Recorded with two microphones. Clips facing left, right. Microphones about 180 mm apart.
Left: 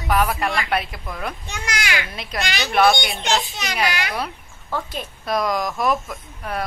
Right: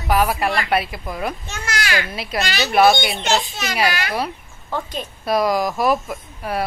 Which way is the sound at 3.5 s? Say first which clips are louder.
Right 2 dB; 15° left (ahead or behind).